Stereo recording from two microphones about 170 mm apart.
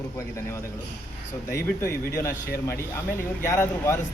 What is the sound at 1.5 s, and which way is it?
Speech, 15° left (ahead or behind).